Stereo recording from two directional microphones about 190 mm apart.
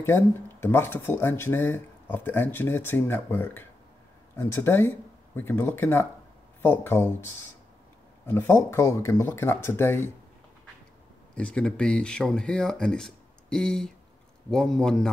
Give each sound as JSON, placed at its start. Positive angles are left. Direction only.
{"t": 0.0, "sound": "speech", "side_deg": 10}
{"t": 11.3, "sound": "speech", "side_deg": 5}